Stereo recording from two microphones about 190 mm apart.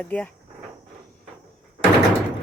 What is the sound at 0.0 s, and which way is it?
Speech, 5° left (ahead or behind).